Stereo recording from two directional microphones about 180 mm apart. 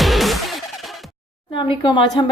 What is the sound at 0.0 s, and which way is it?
Music, centre (ahead or behind).